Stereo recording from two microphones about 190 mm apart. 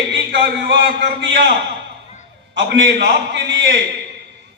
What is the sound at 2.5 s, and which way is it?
A man's voice, 65° right (ahead or behind).